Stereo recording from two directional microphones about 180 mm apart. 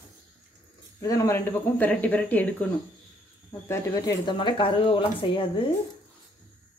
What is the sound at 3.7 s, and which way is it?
Speech, 15° left (ahead or behind).